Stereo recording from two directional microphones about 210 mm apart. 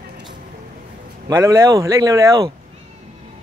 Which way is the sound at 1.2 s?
15° right (ahead or behind).